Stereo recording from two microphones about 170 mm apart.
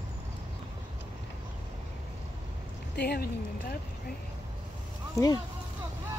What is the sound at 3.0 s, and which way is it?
Speech, 70° left (ahead or behind).